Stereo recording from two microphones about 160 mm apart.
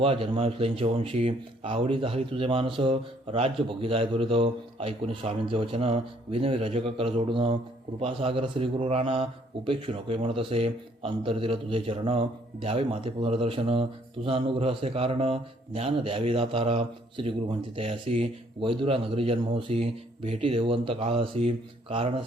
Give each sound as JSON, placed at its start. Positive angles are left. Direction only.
{"t": 0.0, "sound": "a man's voice", "side_deg": -35}